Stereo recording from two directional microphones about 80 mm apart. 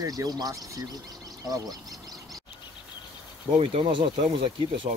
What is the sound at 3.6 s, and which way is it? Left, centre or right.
Speech, right.